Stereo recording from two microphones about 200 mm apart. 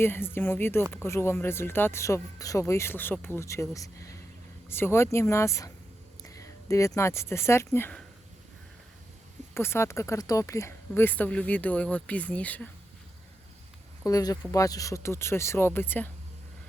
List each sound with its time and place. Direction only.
0.0 s speech: 10° left (ahead or behind)
9.6 s speech: 10° left (ahead or behind)
14.0 s speech: 20° left (ahead or behind)